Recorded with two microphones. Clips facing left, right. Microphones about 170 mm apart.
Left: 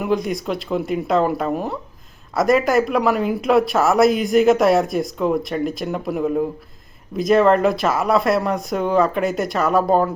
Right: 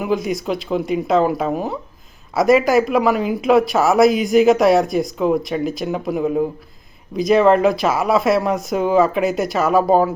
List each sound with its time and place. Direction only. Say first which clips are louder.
0.0 s speech: right 1 dB; centre (ahead or behind)